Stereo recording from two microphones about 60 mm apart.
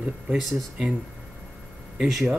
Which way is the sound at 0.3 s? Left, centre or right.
Centre.